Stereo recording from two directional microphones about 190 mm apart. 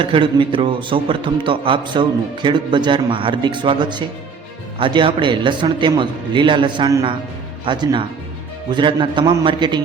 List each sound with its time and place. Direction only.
0.0 s a man's voice: 25° right (ahead or behind)